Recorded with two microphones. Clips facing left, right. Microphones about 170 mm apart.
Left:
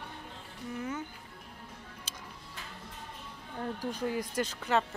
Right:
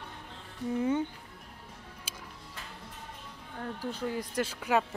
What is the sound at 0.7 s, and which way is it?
Speech, 30° right (ahead or behind).